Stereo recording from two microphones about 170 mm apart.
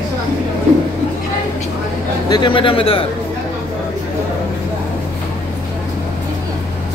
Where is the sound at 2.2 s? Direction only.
25° left (ahead or behind).